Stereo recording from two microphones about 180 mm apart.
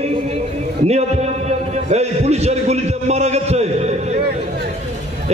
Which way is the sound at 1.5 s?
35° right (ahead or behind).